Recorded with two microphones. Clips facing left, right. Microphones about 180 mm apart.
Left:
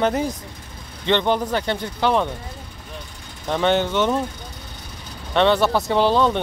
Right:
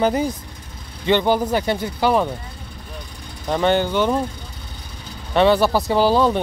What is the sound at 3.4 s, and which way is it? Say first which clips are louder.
Speech: right 1 dB; centre (ahead or behind).